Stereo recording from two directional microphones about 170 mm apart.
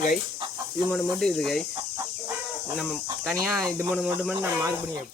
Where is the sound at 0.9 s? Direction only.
5° left (ahead or behind).